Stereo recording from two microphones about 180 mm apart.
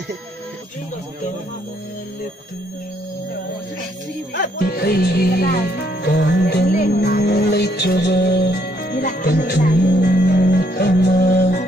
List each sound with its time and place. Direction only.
4.3 s music: 65° left (ahead or behind)